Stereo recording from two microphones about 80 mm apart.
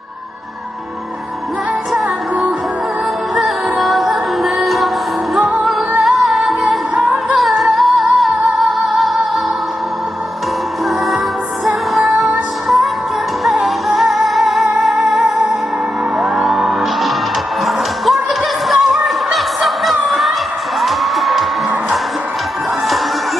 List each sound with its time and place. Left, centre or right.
3.3 s music: centre
7.0 s music: centre
7.3 s music: centre
11.6 s music: centre
18.7 s a sound: centre
20.8 s music: centre